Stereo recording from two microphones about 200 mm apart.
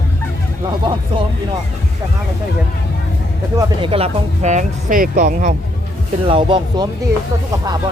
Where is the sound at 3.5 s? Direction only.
25° right (ahead or behind).